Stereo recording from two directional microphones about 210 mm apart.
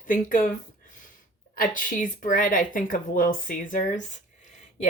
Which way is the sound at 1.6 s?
40° left (ahead or behind).